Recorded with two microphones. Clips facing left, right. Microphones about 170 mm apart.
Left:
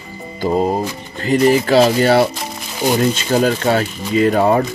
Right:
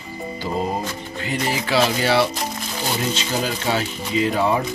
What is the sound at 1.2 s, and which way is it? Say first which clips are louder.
Speech: left 12 dB; 45° left (ahead or behind).